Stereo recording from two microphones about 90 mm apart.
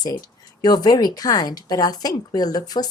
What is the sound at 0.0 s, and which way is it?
Speech, 50° left (ahead or behind).